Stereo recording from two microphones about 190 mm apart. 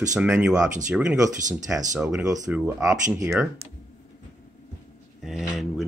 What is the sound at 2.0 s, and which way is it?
Speech, 5° right (ahead or behind).